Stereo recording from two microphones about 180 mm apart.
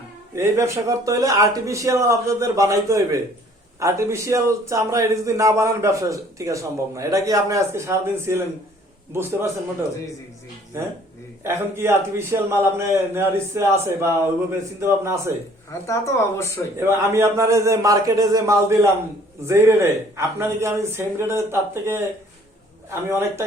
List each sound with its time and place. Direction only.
0.3 s a man's voice: 15° right (ahead or behind)
11.4 s a man's voice: 15° right (ahead or behind)
15.9 s speech: 15° left (ahead or behind)
17.1 s a man's voice: 15° right (ahead or behind)
23.0 s a man's voice: 15° right (ahead or behind)